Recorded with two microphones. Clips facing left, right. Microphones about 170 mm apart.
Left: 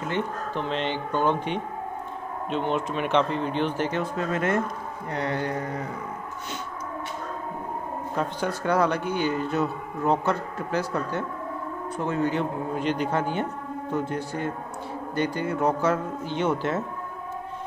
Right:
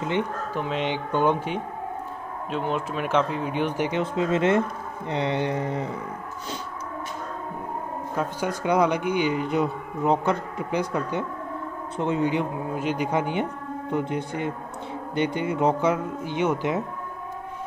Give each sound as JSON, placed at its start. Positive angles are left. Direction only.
{"t": 0.5, "sound": "speech", "side_deg": -10}
{"t": 5.1, "sound": "mantra", "side_deg": -25}
{"t": 8.2, "sound": "speech", "side_deg": -10}